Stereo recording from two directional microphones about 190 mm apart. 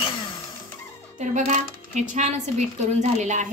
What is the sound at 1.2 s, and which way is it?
Speech, 40° right (ahead or behind).